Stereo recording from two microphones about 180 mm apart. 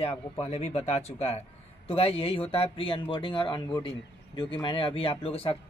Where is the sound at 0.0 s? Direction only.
35° left (ahead or behind).